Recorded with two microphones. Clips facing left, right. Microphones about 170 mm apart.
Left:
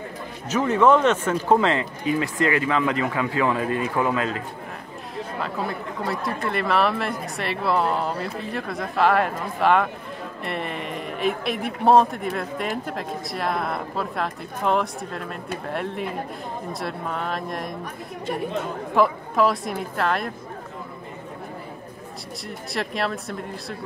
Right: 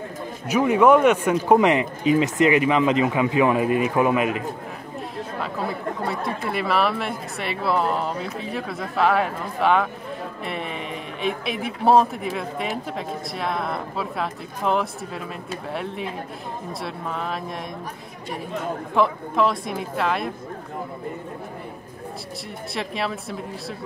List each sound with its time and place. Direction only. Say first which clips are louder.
0.5 s speech: right 2 dB; 10° right (ahead or behind)
5.4 s a man's voice: right 1 dB; centre (ahead or behind)
18.9 s a man's voice: left 1 dB; centre (ahead or behind)
22.8 s a man's voice: left 1 dB; centre (ahead or behind)